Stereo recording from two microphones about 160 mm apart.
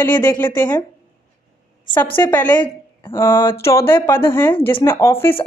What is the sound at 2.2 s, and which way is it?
A woman's voice, 10° left (ahead or behind).